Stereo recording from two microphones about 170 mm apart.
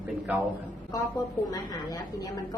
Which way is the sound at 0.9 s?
20° left (ahead or behind).